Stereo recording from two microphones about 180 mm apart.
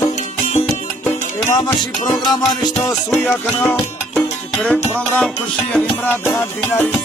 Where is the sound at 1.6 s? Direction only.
25° left (ahead or behind).